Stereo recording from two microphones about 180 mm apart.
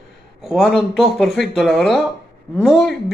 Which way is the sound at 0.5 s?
Centre (ahead or behind).